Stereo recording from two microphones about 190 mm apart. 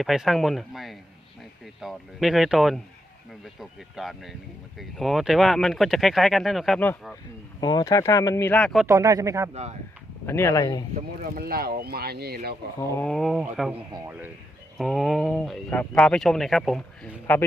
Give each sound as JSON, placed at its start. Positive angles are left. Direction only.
{"t": 0.0, "sound": "speech", "side_deg": 0}
{"t": 7.6, "sound": "speech", "side_deg": 20}
{"t": 8.9, "sound": "speech", "side_deg": -15}
{"t": 10.2, "sound": "speech", "side_deg": 15}
{"t": 11.2, "sound": "speech", "side_deg": -55}
{"t": 12.9, "sound": "speech", "side_deg": 5}
{"t": 14.8, "sound": "speech", "side_deg": 0}